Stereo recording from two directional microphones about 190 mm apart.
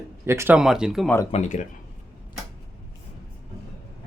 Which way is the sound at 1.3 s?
40° left (ahead or behind).